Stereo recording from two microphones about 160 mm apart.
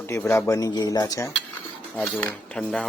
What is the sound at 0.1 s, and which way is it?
Speech, 15° left (ahead or behind).